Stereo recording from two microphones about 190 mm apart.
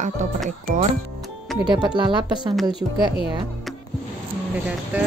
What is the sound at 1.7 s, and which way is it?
Speech, 25° right (ahead or behind).